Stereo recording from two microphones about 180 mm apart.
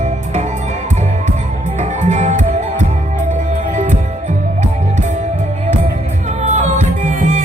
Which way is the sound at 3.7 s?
40° right (ahead or behind).